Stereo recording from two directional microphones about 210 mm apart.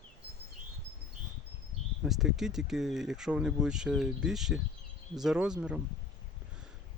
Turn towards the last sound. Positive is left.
turn(degrees=-5)  # may be behind; listen again after turning